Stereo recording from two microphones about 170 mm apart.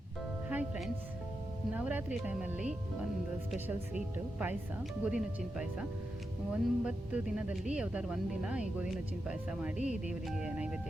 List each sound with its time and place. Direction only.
0.4 s music: 10° right (ahead or behind)
1.7 s speech: 10° right (ahead or behind)
9.7 s speech: 45° left (ahead or behind)
10.1 s speech: 5° right (ahead or behind)